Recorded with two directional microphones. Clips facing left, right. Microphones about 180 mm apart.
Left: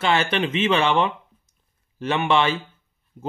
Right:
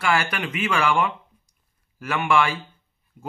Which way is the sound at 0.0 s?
25° left (ahead or behind).